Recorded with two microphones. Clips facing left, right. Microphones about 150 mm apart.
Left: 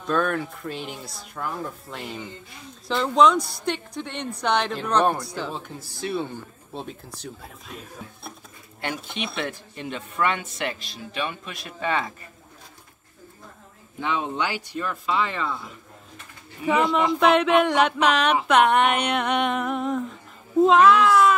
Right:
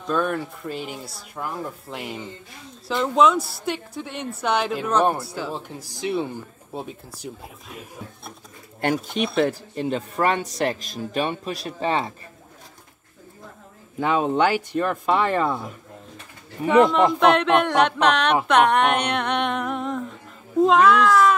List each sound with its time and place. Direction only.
0.0 s a woman's voice: 5° right (ahead or behind)
8.8 s speech: 45° right (ahead or behind)
13.9 s speech: 40° right (ahead or behind)
17.2 s a woman's voice: 5° left (ahead or behind)